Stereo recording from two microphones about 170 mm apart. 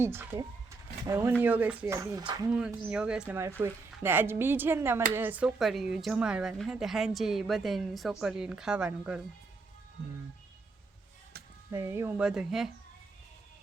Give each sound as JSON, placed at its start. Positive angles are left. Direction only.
{"t": 0.0, "sound": "speech", "side_deg": -15}
{"t": 2.5, "sound": "speech", "side_deg": -5}
{"t": 11.7, "sound": "speech", "side_deg": -15}